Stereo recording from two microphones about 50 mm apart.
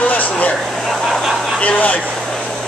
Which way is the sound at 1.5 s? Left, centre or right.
Left.